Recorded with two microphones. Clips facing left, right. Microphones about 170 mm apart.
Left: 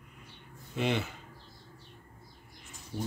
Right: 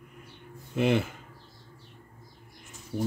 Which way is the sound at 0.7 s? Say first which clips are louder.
Right 6 dB; 50° right (ahead or behind).